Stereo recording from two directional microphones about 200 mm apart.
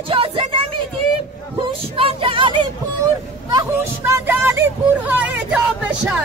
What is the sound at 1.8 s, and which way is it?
Child singing, 30° right (ahead or behind).